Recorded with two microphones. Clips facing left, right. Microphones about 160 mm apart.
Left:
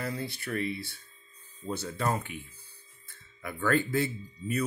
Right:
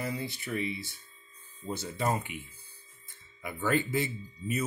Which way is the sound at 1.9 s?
20° right (ahead or behind).